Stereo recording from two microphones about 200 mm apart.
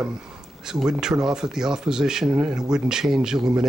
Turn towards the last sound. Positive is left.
turn(degrees=-5)  # may be behind; listen again after turning